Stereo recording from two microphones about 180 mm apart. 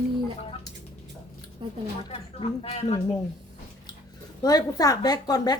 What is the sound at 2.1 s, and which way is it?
Speech, 35° left (ahead or behind).